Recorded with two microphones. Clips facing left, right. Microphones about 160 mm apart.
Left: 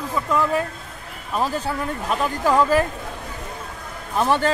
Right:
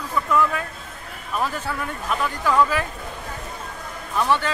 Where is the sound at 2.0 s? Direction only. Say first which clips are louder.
Left 2 dB; 30° left (ahead or behind).